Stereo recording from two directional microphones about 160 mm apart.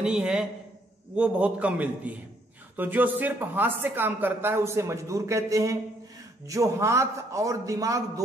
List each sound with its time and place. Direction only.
0.0 s a woman's voice: 5° right (ahead or behind)